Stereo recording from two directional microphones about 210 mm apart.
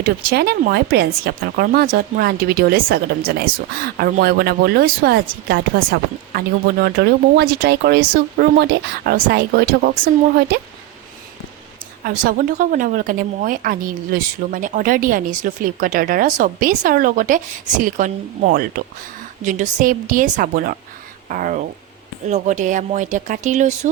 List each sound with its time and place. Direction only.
0.0 s speech: 50° right (ahead or behind)
12.0 s a woman's voice: 40° right (ahead or behind)